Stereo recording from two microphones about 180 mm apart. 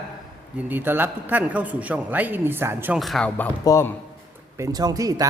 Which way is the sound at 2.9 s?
Centre (ahead or behind).